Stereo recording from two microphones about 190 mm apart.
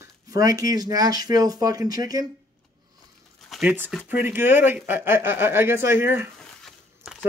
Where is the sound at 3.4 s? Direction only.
Centre (ahead or behind).